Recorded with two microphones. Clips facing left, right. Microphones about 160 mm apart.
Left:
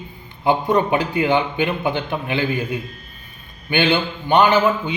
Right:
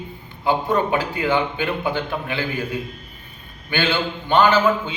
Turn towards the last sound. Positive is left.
turn(degrees=15)  # may be behind; listen again after turning